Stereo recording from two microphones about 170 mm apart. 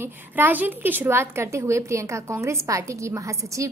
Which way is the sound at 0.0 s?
10° right (ahead or behind).